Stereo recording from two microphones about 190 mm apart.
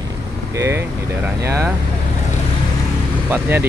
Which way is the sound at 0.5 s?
15° right (ahead or behind).